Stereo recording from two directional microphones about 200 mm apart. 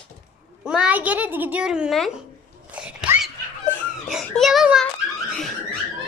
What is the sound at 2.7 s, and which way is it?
Sneeze, 5° right (ahead or behind).